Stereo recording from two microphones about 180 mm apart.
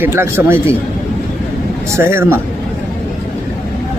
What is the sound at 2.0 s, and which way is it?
Speech, 15° right (ahead or behind).